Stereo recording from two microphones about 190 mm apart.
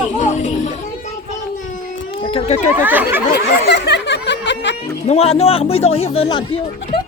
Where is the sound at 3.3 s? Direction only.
65° left (ahead or behind).